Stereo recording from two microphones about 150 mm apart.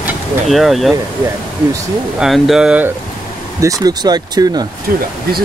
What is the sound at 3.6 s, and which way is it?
Speech, 25° right (ahead or behind).